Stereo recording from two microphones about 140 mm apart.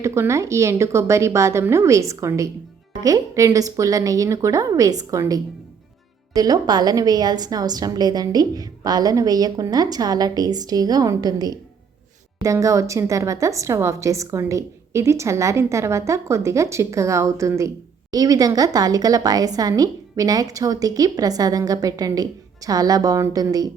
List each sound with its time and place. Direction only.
0.0 s a woman's voice: 20° right (ahead or behind)